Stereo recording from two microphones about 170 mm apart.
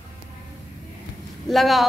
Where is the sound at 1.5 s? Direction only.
Centre (ahead or behind).